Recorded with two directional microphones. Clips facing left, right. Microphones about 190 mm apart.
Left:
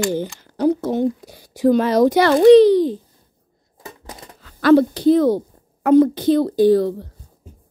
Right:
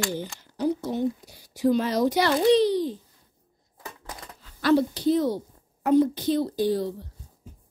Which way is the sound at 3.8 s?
20° left (ahead or behind).